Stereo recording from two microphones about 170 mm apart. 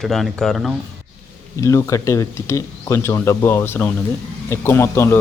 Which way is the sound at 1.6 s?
15° left (ahead or behind).